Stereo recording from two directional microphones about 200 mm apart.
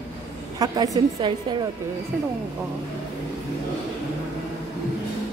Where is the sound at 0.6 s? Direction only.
20° right (ahead or behind).